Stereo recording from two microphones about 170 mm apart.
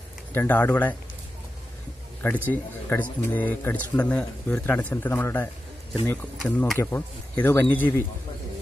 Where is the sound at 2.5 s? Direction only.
10° left (ahead or behind).